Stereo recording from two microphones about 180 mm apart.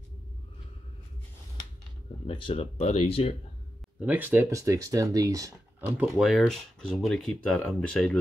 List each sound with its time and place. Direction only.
2.2 s speech: 30° left (ahead or behind)
4.0 s speech: 10° right (ahead or behind); by 8.2 s 5° left (ahead or behind)